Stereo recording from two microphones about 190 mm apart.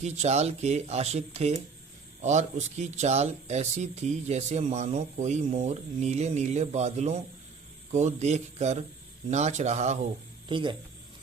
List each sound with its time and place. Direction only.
0.0 s speech: 35° right (ahead or behind)
10.5 s speech: 25° right (ahead or behind)